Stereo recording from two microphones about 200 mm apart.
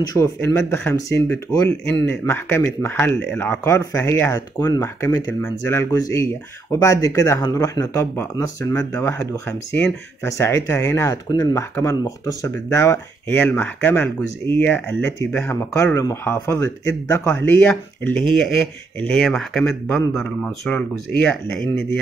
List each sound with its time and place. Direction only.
0.1 s speech: 15° left (ahead or behind)
2.2 s speech: 10° left (ahead or behind)